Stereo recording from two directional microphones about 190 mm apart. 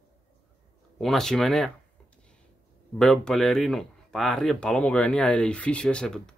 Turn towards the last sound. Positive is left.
turn(degrees=5)  # may be behind; listen again after turning